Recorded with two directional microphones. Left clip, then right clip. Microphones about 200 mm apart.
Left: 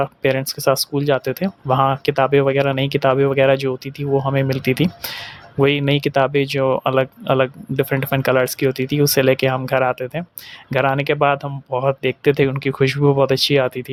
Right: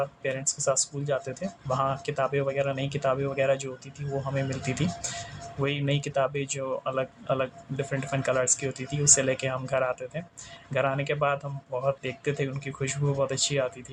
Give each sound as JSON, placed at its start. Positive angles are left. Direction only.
{"t": 0.0, "sound": "speech", "side_deg": 50}